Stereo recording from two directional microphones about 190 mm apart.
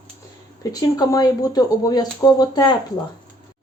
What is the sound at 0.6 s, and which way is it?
Speech, 20° left (ahead or behind).